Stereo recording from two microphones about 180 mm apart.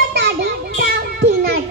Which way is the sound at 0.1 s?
70° right (ahead or behind).